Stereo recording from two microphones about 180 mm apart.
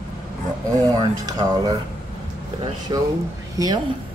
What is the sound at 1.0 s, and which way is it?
Speech, 20° right (ahead or behind).